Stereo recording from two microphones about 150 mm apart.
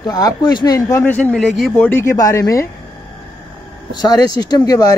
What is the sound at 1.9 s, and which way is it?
Speech, 15° left (ahead or behind).